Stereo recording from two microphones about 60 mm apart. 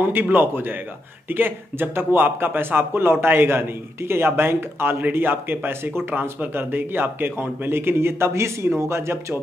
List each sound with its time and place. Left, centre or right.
0.0 s speech: right